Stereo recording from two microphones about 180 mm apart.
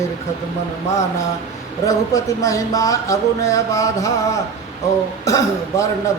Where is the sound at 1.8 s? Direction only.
20° left (ahead or behind).